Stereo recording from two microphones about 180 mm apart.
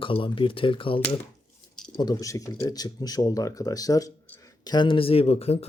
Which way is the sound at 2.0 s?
20° left (ahead or behind).